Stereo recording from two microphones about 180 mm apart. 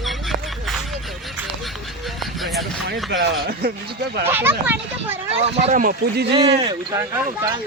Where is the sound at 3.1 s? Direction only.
60° right (ahead or behind).